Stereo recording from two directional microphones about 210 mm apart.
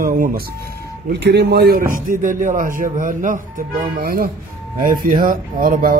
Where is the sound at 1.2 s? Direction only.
50° right (ahead or behind).